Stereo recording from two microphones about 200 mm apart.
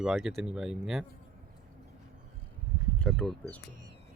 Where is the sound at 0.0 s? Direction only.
Centre (ahead or behind).